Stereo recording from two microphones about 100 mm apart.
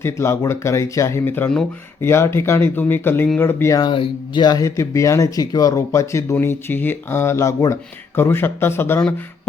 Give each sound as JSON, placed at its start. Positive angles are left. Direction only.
{"t": 0.0, "sound": "speech", "side_deg": 25}
{"t": 3.8, "sound": "speech", "side_deg": 50}
{"t": 4.6, "sound": "speech", "side_deg": 30}